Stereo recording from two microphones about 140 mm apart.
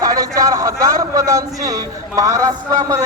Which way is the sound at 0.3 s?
20° right (ahead or behind).